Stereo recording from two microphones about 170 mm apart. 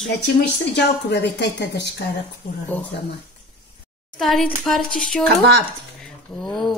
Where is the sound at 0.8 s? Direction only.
80° left.